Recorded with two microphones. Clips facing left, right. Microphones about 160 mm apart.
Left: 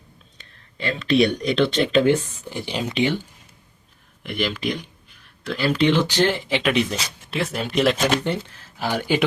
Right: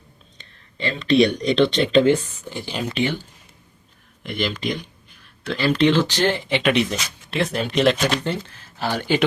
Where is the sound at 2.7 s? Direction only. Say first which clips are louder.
Even; 15° left (ahead or behind).